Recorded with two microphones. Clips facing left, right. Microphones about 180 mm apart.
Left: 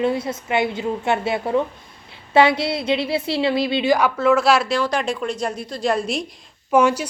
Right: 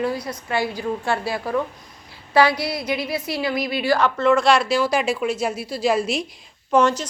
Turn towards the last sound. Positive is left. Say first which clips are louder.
# left 1 dB
turn(degrees=10)  # may be behind; listen again after turning